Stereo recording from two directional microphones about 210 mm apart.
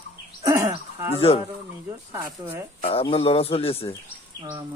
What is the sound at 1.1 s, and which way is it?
Speech, 30° left (ahead or behind).